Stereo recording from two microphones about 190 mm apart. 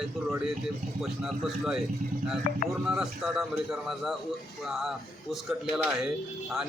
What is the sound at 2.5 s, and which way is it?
Speech, 45° left (ahead or behind).